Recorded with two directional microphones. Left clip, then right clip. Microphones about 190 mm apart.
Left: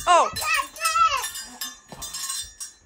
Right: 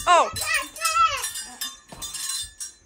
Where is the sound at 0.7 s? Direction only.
30° left (ahead or behind).